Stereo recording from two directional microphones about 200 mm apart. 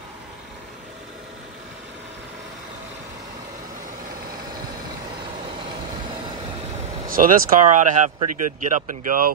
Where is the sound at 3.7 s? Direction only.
40° right (ahead or behind).